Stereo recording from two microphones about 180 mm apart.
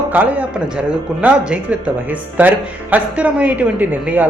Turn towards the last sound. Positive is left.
turn(degrees=-10)  # may be behind; listen again after turning